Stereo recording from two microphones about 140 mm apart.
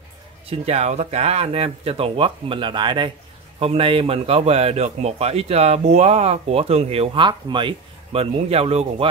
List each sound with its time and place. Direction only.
0.5 s a man's voice: 50° right (ahead or behind)